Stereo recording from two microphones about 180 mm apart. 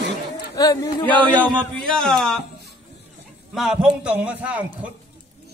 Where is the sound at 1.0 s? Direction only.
10° left (ahead or behind).